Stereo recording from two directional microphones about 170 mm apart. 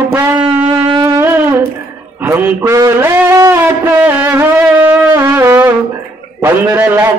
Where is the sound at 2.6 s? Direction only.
15° right (ahead or behind).